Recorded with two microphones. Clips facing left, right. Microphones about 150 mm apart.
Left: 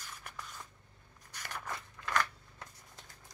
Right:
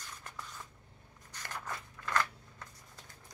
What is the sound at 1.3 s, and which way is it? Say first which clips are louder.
Scissors: even; 10° left (ahead or behind).